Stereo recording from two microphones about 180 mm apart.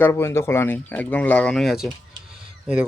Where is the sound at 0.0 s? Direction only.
15° left (ahead or behind).